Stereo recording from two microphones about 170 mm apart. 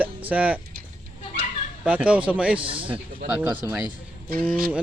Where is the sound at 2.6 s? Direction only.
30° right (ahead or behind).